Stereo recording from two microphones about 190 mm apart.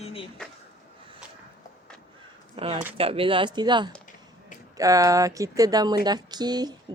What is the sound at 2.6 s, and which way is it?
Speech, 30° right (ahead or behind).